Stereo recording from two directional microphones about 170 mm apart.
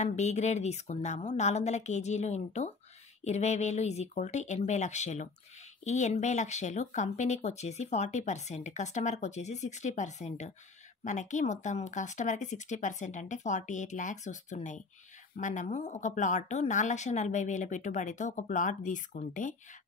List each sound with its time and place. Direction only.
0.0 s speech: 40° left (ahead or behind)